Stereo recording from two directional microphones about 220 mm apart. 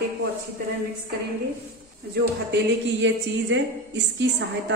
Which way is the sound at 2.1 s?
55° right (ahead or behind).